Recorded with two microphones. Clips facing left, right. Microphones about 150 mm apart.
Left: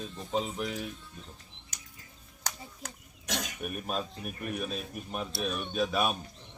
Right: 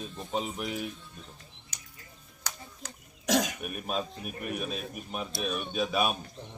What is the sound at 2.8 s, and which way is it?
Cough, 50° left (ahead or behind).